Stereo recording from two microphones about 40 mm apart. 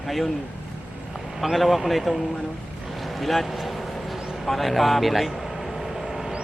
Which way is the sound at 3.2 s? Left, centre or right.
Centre.